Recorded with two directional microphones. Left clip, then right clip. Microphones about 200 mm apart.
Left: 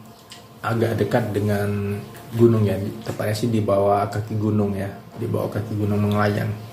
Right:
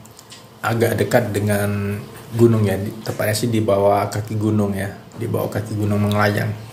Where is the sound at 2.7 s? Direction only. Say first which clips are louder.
Right 3 dB; 10° right (ahead or behind).